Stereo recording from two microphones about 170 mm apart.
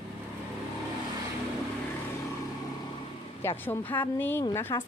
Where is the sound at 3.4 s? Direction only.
15° left (ahead or behind).